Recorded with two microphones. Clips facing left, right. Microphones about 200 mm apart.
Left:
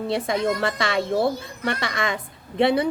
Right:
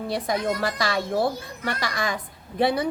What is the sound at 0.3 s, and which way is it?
A woman's voice, 25° left (ahead or behind).